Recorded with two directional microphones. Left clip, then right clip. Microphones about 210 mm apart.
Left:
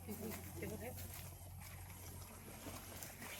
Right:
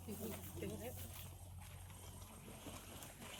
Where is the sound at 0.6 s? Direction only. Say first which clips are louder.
Even; 55° right (ahead or behind).